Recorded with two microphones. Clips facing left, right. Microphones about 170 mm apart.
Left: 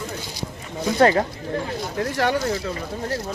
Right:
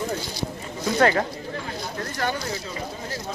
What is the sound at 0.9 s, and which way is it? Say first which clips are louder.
Speech: left 3 dB; 30° left (ahead or behind).